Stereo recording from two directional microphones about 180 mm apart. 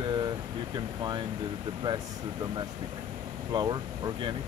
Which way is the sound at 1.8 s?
25° right (ahead or behind).